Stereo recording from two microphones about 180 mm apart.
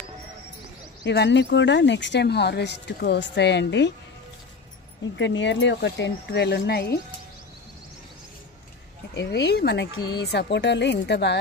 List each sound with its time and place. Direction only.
1.0 s speech: 75° left (ahead or behind)
5.1 s speech: 85° left; by 7.0 s 65° left (ahead or behind)
9.1 s speech: 70° left (ahead or behind)